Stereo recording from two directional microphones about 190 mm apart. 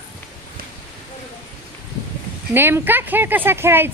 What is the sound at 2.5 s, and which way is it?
Speech, 10° right (ahead or behind).